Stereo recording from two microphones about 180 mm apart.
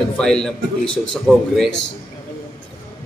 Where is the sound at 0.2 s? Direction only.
5° left (ahead or behind).